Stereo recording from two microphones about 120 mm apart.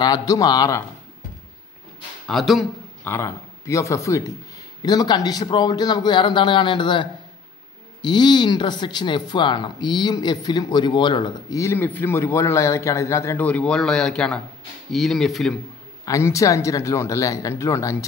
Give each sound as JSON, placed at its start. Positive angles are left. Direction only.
{"t": 0.0, "sound": "speech", "side_deg": 30}
{"t": 2.2, "sound": "speech", "side_deg": 0}
{"t": 3.0, "sound": "speech", "side_deg": 20}
{"t": 11.5, "sound": "a man's voice", "side_deg": 25}
{"t": 16.1, "sound": "a man's voice", "side_deg": 25}